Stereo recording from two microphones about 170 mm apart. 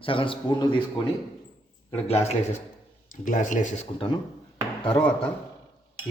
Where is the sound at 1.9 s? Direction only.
40° left (ahead or behind).